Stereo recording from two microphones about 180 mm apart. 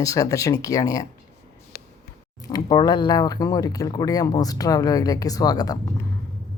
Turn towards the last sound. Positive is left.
turn(degrees=20)  # may be behind; listen again after turning